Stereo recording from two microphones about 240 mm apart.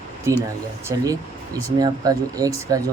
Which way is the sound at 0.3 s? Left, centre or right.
Centre.